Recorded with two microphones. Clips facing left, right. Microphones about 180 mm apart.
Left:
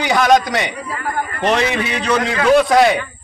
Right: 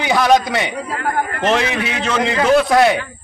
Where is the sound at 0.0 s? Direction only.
5° right (ahead or behind).